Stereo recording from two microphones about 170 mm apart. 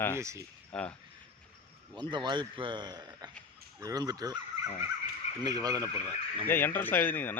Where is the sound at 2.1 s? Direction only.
25° right (ahead or behind).